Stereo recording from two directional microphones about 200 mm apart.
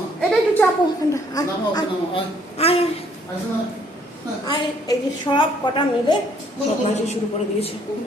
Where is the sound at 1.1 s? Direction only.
15° left (ahead or behind).